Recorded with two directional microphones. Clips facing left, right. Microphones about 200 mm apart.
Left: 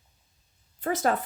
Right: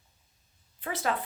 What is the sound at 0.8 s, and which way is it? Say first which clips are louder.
Speech: left 6 dB; 45° left (ahead or behind).